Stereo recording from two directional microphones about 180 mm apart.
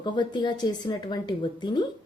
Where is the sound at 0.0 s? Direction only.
25° left (ahead or behind).